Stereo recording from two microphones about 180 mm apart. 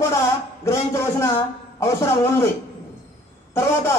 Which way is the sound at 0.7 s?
15° left (ahead or behind).